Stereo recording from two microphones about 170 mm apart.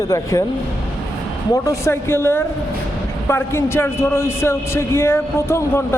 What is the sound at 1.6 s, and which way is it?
A man's voice, 15° left (ahead or behind).